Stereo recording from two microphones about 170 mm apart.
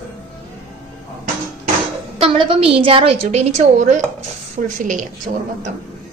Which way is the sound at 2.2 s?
35° right (ahead or behind).